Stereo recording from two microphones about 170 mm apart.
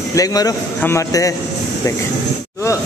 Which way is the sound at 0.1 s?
20° left (ahead or behind).